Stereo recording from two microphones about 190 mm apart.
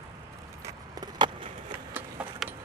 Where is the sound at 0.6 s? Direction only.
20° right (ahead or behind).